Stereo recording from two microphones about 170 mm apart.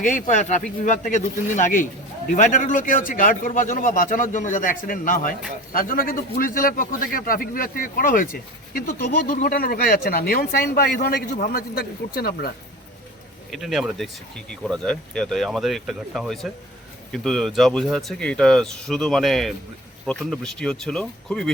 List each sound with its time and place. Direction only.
0.0 s a man's voice: 50° left (ahead or behind)
13.5 s speech: centre (ahead or behind)